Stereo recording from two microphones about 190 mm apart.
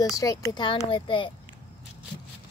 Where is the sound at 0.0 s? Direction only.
20° left (ahead or behind).